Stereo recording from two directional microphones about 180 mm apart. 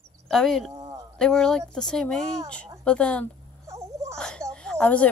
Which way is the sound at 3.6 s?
15° right (ahead or behind).